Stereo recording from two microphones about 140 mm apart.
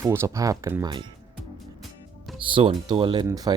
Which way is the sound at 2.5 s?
35° right (ahead or behind).